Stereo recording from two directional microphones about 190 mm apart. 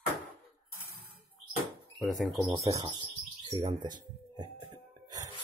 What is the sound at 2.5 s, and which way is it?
Speech, 15° right (ahead or behind).